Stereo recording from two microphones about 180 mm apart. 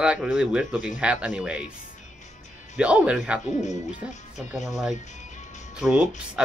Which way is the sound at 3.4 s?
40° left (ahead or behind).